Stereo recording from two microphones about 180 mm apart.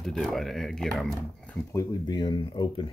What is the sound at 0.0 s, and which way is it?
Speech, centre (ahead or behind).